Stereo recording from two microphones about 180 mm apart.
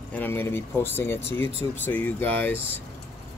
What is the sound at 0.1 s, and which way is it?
Speech, 10° left (ahead or behind).